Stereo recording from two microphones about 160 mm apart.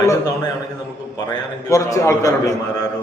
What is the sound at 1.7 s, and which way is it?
Speech, 20° left (ahead or behind).